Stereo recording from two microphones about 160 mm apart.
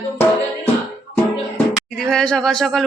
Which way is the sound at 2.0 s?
5° left (ahead or behind).